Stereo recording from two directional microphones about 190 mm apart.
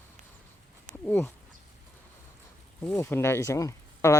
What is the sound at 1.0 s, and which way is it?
Speech, 10° left (ahead or behind).